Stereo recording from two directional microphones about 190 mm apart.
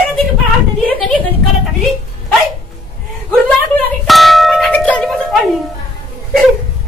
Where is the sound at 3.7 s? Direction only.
Centre (ahead or behind).